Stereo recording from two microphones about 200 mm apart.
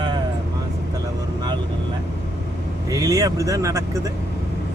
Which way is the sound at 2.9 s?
20° right (ahead or behind).